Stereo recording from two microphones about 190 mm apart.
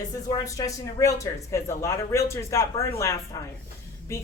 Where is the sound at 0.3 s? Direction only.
20° left (ahead or behind).